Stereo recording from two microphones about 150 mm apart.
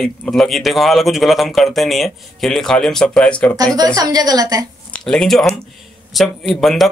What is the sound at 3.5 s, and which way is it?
A woman's voice, 25° right (ahead or behind).